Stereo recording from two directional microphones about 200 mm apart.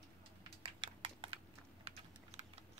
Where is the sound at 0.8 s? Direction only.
25° right (ahead or behind).